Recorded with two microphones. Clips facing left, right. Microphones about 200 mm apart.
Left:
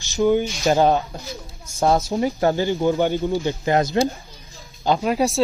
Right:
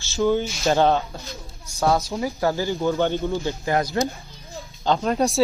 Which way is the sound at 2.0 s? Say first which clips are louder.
Left 4 dB; 25° left (ahead or behind).